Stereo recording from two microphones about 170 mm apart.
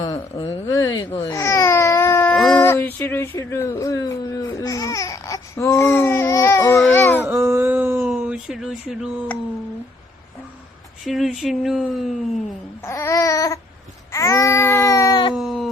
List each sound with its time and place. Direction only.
0.0 s speech: 25° left (ahead or behind)
0.7 s speech: 20° left (ahead or behind)
1.4 s baby cry: 15° left (ahead or behind)
2.3 s a sound: 5° left (ahead or behind)
7.3 s a sound: 15° right (ahead or behind)
11.0 s speech: centre (ahead or behind)
12.8 s babbling: 15° left (ahead or behind)
14.1 s baby cry: 15° left (ahead or behind)
15.4 s a sound: centre (ahead or behind)